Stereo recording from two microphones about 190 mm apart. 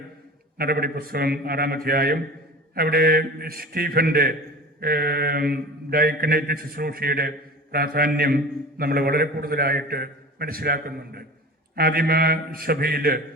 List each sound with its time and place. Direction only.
0.6 s mantra: 50° right (ahead or behind)